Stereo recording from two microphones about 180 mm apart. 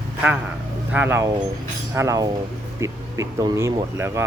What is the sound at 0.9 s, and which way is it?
Speech, 10° right (ahead or behind).